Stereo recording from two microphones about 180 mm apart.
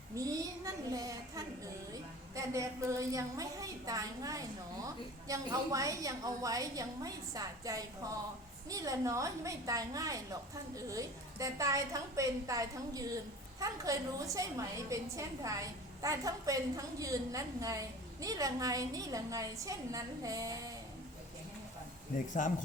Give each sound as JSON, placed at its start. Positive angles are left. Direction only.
{"t": 0.2, "sound": "a woman's voice", "side_deg": -20}
{"t": 22.3, "sound": "speech", "side_deg": 45}